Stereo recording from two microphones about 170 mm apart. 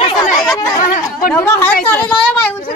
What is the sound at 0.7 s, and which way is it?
Speech, 50° left (ahead or behind).